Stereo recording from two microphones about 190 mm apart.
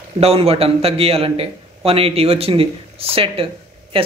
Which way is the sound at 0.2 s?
30° right (ahead or behind).